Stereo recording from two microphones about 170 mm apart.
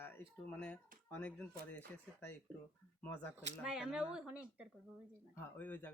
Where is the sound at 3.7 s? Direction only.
5° right (ahead or behind).